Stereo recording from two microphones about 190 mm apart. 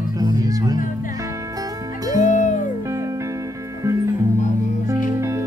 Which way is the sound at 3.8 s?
15° right (ahead or behind).